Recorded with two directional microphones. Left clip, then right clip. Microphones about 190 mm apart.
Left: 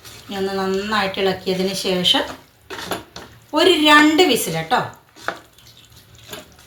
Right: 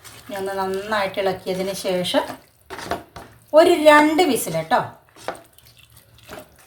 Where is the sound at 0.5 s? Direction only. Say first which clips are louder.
Left 2 dB; 55° right (ahead or behind).